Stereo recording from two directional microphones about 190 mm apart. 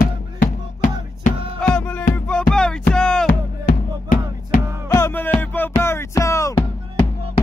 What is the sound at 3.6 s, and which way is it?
Music, 50° left (ahead or behind).